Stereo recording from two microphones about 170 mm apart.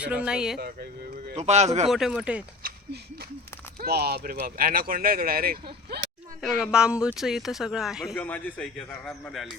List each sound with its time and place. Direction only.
0.0 s speech: 5° right (ahead or behind)
1.4 s speech: 40° right (ahead or behind)
1.9 s speech: centre (ahead or behind)
2.6 s a sound: 65° right (ahead or behind)
3.8 s speech: 70° right (ahead or behind)
6.4 s speech: 5° right (ahead or behind)
8.1 s speech: 10° left (ahead or behind)